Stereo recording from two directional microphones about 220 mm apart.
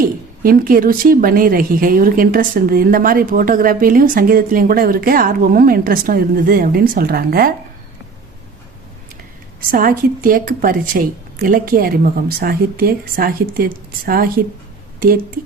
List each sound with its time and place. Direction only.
0.0 s a woman's voice: 40° right (ahead or behind)
9.6 s a woman's voice: 40° right (ahead or behind)